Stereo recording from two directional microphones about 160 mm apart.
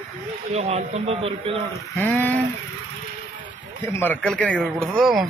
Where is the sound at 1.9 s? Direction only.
10° left (ahead or behind).